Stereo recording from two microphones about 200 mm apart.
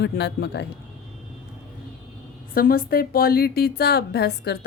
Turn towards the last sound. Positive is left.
turn(degrees=55)  # may be behind; listen again after turning